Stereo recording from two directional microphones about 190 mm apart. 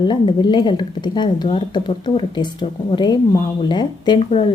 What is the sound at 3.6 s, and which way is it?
Speech, 25° left (ahead or behind).